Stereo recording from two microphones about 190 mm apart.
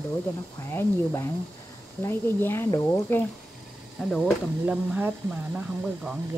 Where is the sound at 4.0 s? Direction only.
Centre (ahead or behind).